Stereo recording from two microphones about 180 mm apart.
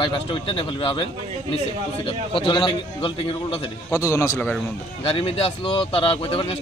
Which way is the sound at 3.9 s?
20° left (ahead or behind).